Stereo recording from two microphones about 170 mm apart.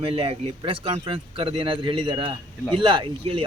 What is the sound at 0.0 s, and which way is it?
Speech, 35° right (ahead or behind).